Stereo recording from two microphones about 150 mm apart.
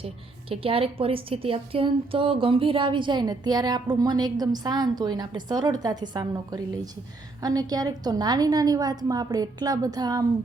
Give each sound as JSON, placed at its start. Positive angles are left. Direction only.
{"t": 0.0, "sound": "a woman's voice", "side_deg": -40}